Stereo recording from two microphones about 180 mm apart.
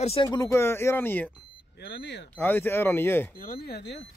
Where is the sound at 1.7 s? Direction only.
65° left (ahead or behind).